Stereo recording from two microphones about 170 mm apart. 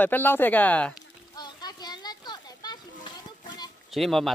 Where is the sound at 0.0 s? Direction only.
10° left (ahead or behind).